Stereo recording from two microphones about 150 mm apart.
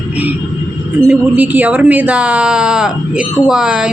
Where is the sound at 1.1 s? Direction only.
10° right (ahead or behind).